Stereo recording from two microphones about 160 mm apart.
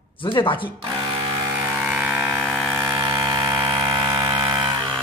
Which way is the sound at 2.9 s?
25° right (ahead or behind).